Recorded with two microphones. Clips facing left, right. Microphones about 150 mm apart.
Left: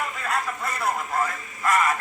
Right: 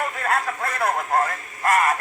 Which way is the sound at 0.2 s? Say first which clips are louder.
Right 4 dB; 55° right (ahead or behind).